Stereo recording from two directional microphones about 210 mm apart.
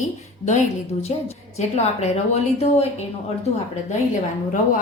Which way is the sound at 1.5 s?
30° left (ahead or behind).